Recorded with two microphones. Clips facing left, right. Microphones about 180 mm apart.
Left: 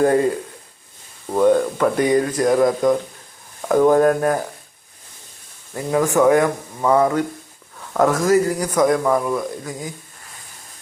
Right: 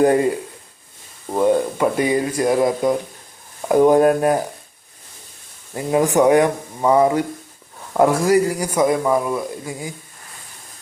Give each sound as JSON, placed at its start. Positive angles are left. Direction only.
{"t": 0.0, "sound": "a man's voice", "side_deg": -20}
{"t": 1.3, "sound": "a man's voice", "side_deg": -10}
{"t": 3.7, "sound": "a man's voice", "side_deg": -15}
{"t": 5.7, "sound": "a man's voice", "side_deg": -20}